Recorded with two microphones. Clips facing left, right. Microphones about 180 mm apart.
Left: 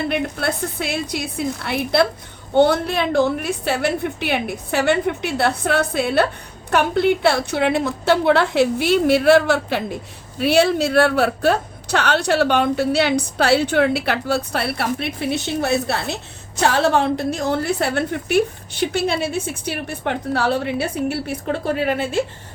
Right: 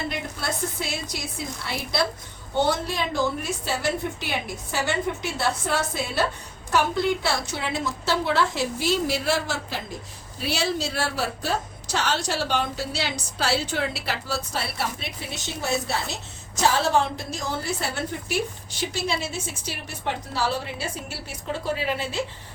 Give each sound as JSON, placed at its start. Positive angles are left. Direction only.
{"t": 0.1, "sound": "a woman's voice", "side_deg": 60}